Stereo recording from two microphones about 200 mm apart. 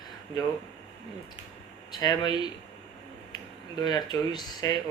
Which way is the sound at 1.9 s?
20° left (ahead or behind).